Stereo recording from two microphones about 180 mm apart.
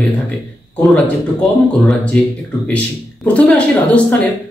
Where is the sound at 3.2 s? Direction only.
5° left (ahead or behind).